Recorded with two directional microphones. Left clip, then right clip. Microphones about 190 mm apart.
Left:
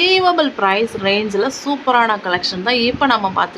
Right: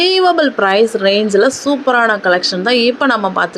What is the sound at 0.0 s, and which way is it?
A woman's voice, 20° right (ahead or behind).